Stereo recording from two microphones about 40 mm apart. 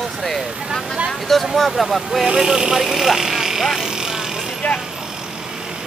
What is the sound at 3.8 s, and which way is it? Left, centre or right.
Vehicle, centre.